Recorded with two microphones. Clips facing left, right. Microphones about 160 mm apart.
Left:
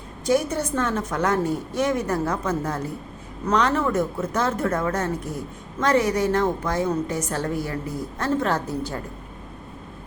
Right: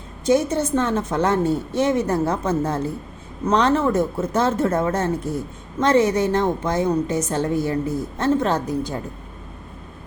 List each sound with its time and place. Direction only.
0.3 s a woman's voice: 25° right (ahead or behind)